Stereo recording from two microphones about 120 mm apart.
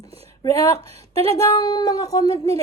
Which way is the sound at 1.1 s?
55° right (ahead or behind).